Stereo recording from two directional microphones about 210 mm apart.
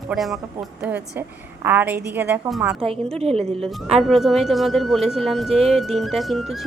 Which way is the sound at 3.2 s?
30° right (ahead or behind).